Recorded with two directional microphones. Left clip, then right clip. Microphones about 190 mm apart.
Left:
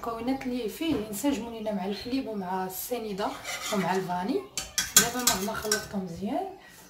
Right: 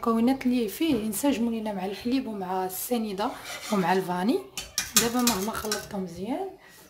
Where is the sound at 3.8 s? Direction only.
55° right (ahead or behind).